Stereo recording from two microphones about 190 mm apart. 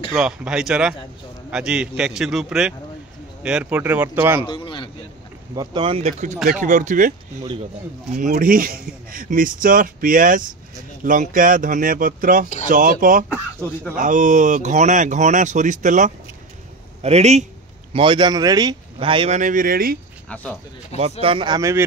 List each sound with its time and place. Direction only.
0.1 s a man's voice: 5° right (ahead or behind)
4.4 s speech: 25° left (ahead or behind)
5.6 s speech: 25° right (ahead or behind)
17.9 s speech: 25° right (ahead or behind); by 20.0 s 50° right (ahead or behind)
21.0 s speech: 30° right (ahead or behind)